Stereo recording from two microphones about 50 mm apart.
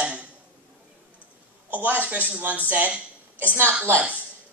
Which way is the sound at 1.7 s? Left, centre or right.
Right.